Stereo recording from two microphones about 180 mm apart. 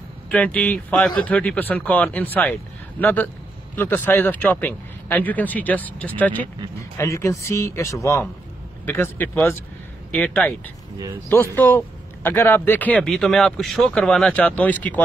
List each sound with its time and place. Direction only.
0.3 s a man's voice: 10° left (ahead or behind)
11.5 s a man's voice: 10° left (ahead or behind)